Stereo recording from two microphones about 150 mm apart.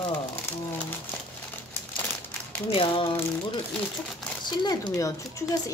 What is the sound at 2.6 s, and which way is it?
Speech, 40° left (ahead or behind).